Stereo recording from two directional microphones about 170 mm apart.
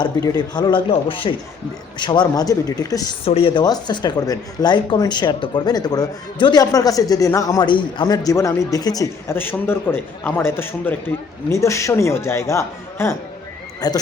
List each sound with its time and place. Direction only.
0.0 s speech: 25° left (ahead or behind)
3.2 s a man's voice: 35° left (ahead or behind)